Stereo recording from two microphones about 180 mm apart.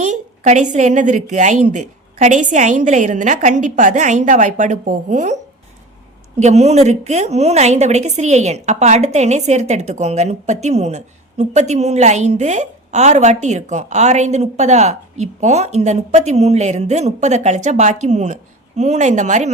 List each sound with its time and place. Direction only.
0.0 s a woman's voice: 40° right (ahead or behind)
6.4 s a woman's voice: 40° right (ahead or behind)